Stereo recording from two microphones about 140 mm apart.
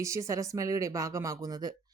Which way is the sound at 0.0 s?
20° right (ahead or behind).